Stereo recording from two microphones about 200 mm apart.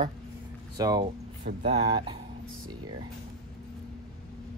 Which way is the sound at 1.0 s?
30° right (ahead or behind).